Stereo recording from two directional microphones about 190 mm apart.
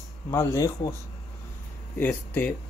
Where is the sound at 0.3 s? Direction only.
15° left (ahead or behind).